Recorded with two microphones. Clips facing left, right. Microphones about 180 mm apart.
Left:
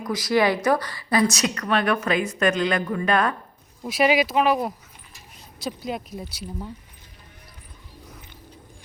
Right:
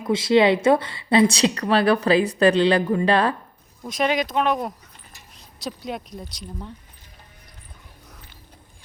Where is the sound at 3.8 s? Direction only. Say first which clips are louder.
Left 3 dB; 5° left (ahead or behind).